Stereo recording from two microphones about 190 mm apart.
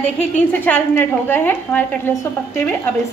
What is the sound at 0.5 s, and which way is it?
A woman's voice, 10° left (ahead or behind).